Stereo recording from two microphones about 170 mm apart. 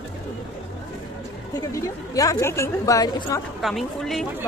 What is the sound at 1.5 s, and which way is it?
A woman's voice, 20° left (ahead or behind).